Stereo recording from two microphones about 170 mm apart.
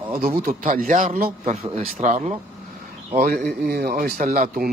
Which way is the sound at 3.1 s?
55° right (ahead or behind).